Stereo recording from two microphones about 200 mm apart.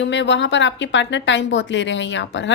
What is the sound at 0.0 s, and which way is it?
A woman's voice, 65° left (ahead or behind).